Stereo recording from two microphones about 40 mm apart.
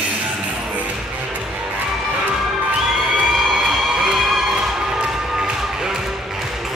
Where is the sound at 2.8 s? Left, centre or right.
Centre.